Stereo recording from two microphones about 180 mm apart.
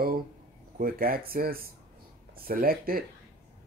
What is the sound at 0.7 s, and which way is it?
Speech, 55° right (ahead or behind).